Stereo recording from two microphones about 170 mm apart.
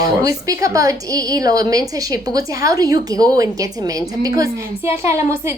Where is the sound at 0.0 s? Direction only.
20° right (ahead or behind).